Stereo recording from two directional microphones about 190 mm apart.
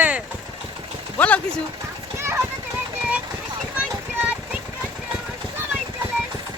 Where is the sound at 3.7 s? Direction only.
5° right (ahead or behind).